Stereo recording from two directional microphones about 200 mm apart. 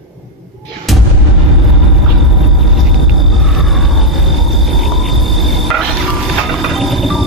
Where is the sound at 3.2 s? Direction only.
Centre (ahead or behind).